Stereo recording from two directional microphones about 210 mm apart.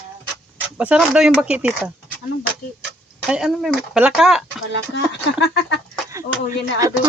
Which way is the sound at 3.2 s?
Centre (ahead or behind).